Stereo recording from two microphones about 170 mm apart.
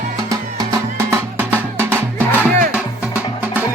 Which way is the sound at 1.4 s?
10° right (ahead or behind).